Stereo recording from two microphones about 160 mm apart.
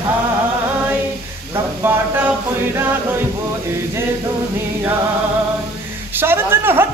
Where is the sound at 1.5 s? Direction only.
15° right (ahead or behind).